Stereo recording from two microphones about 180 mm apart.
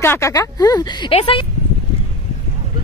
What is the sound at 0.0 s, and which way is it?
A woman's voice, 15° left (ahead or behind).